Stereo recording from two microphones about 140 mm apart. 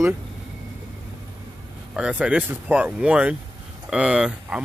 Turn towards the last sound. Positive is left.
turn(degrees=-5)  # may be behind; listen again after turning